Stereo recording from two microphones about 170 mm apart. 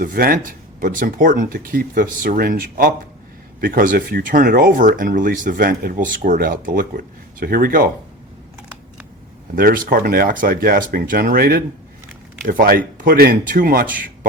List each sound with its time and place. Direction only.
0.0 s speech: 60° right (ahead or behind)
9.6 s speech: 55° right (ahead or behind)